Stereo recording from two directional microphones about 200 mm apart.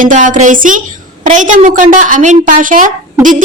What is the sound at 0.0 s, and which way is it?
A woman's voice, 40° right (ahead or behind).